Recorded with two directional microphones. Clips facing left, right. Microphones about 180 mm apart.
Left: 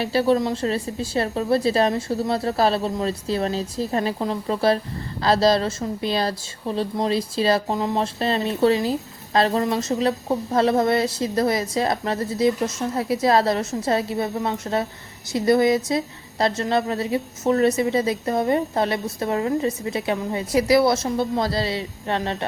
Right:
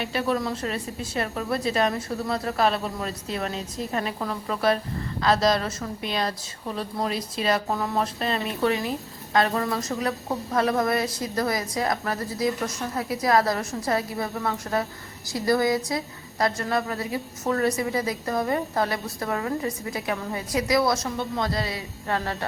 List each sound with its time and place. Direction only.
0.0 s a woman's voice: 30° left (ahead or behind)